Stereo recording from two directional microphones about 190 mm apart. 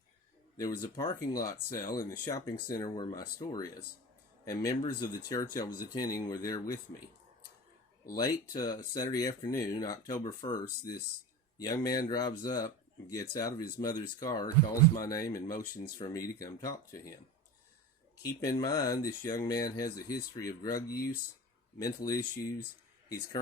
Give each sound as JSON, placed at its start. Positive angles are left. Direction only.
{"t": 0.5, "sound": "speech", "side_deg": 20}
{"t": 8.1, "sound": "speech", "side_deg": 20}
{"t": 18.2, "sound": "speech", "side_deg": 15}